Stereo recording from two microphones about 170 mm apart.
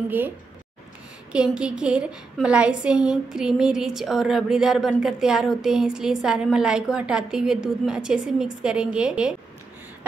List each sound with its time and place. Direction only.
1.3 s a woman's voice: 5° right (ahead or behind)